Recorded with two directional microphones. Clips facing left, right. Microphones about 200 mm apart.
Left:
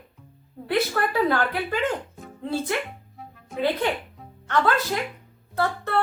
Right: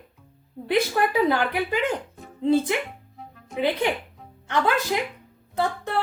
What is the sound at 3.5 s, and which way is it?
A woman's voice, 15° right (ahead or behind).